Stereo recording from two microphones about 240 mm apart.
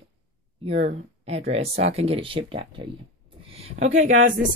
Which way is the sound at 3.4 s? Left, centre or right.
Right.